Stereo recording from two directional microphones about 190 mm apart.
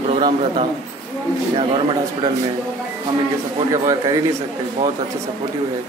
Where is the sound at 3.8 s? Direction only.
20° right (ahead or behind).